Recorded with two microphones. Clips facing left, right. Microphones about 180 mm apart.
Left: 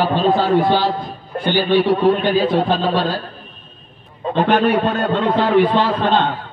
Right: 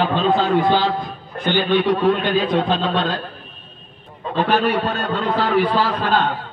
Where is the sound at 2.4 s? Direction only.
5° left (ahead or behind).